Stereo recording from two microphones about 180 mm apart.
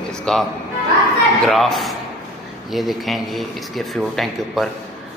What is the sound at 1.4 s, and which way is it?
Speech, centre (ahead or behind).